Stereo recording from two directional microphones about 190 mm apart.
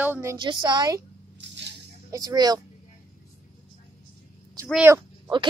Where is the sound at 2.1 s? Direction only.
20° right (ahead or behind).